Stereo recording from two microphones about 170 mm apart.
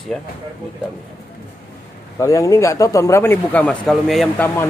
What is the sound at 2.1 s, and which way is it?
A man's voice, 20° left (ahead or behind).